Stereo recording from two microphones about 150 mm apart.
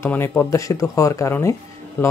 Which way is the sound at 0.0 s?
15° left (ahead or behind).